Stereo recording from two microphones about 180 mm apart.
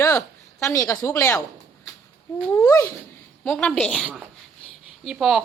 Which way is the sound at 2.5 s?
15° left (ahead or behind).